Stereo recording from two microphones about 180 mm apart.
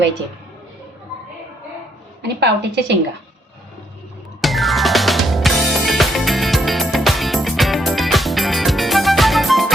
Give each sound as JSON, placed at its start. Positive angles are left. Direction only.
{"t": 2.2, "sound": "a woman's voice", "side_deg": -75}
{"t": 4.4, "sound": "music", "side_deg": 0}